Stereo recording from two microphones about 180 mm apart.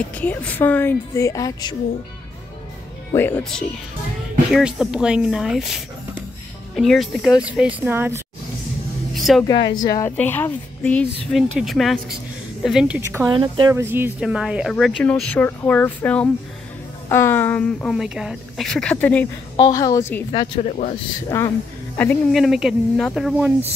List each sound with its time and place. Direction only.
0.0 s a woman's voice: 10° left (ahead or behind)
3.1 s a woman's voice: 10° left (ahead or behind); by 8.2 s 10° right (ahead or behind)
9.1 s a sound: centre (ahead or behind)
9.4 s a woman's voice: 20° left (ahead or behind); by 13.3 s 10° right (ahead or behind)
13.3 s speech: 25° right (ahead or behind)
13.7 s a woman's voice: 10° right (ahead or behind); by 19.2 s 10° left (ahead or behind)
19.5 s a woman's voice: 20° left (ahead or behind)
20.2 s a woman's voice: 30° left (ahead or behind)
21.9 s speech: 10° left (ahead or behind)